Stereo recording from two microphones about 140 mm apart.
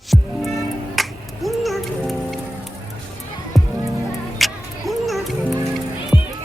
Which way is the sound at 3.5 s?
Centre (ahead or behind).